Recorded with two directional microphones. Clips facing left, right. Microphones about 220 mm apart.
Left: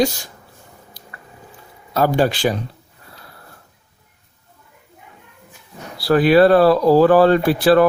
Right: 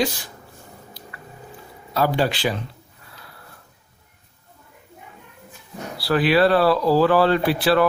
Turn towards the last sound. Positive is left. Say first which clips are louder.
# left 5 dB
turn(degrees=45)  # may be behind; listen again after turning